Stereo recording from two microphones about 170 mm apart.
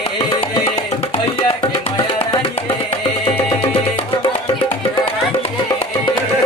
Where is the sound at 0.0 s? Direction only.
30° left (ahead or behind).